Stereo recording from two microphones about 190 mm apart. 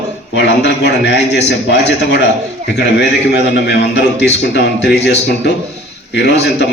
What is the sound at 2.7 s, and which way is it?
A man's voice, 65° left (ahead or behind).